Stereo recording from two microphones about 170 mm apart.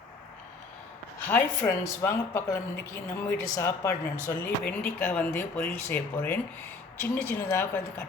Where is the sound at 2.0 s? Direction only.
15° left (ahead or behind).